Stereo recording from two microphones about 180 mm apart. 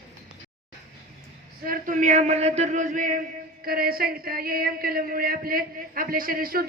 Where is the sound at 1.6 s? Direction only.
50° right (ahead or behind).